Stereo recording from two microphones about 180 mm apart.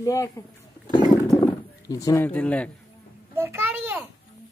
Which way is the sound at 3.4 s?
15° right (ahead or behind).